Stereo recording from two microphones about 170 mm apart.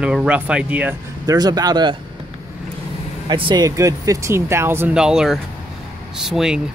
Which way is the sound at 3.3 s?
30° right (ahead or behind).